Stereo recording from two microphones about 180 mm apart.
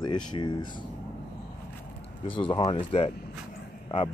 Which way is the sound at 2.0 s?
30° left (ahead or behind).